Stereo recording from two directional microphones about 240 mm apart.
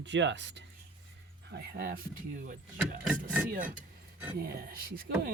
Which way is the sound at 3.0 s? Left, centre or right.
Centre.